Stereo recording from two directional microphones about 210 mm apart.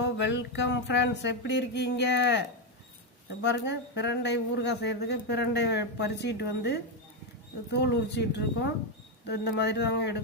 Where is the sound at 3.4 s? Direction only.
55° left (ahead or behind).